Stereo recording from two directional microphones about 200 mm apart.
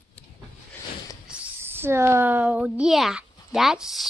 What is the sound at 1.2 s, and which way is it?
Speech, 10° right (ahead or behind).